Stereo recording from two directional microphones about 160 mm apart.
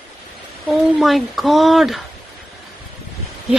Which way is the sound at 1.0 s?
Centre (ahead or behind).